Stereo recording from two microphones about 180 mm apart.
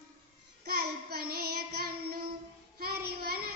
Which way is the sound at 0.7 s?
60° right (ahead or behind).